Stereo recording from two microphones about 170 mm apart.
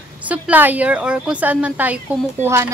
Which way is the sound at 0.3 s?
10° right (ahead or behind).